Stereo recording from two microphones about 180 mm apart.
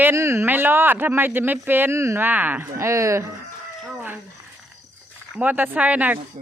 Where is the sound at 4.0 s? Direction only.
10° right (ahead or behind).